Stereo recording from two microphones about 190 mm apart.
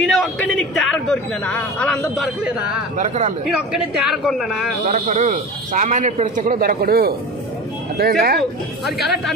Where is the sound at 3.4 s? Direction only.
5° right (ahead or behind).